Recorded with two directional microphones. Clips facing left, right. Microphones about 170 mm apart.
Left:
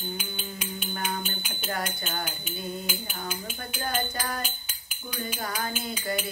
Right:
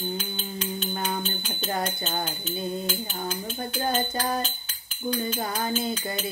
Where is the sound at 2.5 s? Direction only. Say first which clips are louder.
Right 5 dB; 10° left (ahead or behind).